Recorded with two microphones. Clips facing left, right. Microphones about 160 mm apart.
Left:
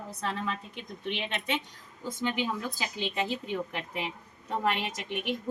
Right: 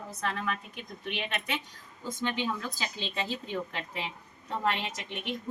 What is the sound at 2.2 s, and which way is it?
A woman's voice, 15° left (ahead or behind).